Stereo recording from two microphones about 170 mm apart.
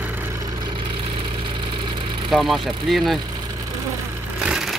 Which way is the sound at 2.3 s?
Centre (ahead or behind).